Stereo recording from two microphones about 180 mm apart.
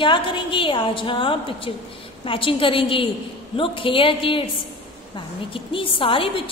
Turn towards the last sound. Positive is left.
turn(degrees=30)  # may be behind; listen again after turning